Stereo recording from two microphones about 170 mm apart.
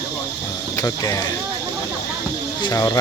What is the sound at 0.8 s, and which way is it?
Speech, 20° left (ahead or behind).